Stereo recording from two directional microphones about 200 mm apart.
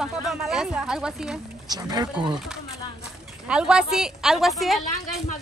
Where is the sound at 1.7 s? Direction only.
20° right (ahead or behind).